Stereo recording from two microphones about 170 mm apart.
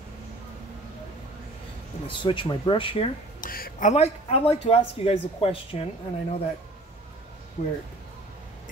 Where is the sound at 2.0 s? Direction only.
30° left (ahead or behind).